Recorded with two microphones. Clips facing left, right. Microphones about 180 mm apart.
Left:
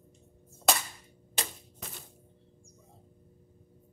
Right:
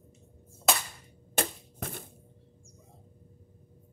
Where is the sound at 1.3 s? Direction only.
55° right (ahead or behind).